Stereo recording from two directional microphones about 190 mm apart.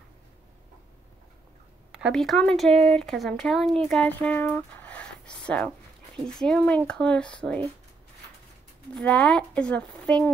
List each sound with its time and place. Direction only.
1.9 s speech: 5° right (ahead or behind)
8.9 s speech: 5° left (ahead or behind)